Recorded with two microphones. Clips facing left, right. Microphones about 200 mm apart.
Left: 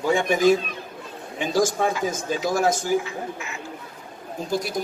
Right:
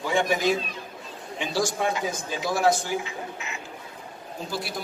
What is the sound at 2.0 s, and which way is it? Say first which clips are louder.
Speech: left 5 dB; 45° left (ahead or behind).